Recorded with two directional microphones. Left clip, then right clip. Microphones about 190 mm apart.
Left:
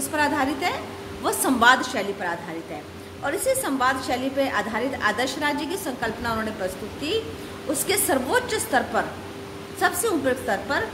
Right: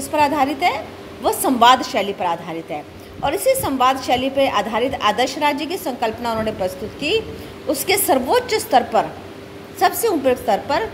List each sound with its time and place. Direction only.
0.1 s a woman's voice: 20° right (ahead or behind)
7.7 s a woman's voice: 25° right (ahead or behind)